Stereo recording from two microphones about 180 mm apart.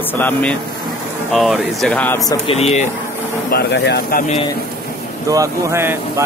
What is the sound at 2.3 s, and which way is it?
Speech, 30° left (ahead or behind).